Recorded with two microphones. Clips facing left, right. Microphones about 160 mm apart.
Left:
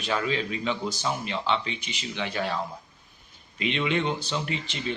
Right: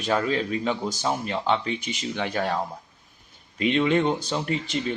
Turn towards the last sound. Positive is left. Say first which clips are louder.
# right 4 dB
turn(degrees=-40)  # may be behind; listen again after turning